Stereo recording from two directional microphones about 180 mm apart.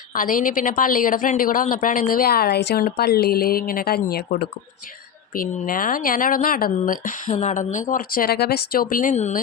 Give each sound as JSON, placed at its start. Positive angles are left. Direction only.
{"t": 0.1, "sound": "a woman's voice", "side_deg": 50}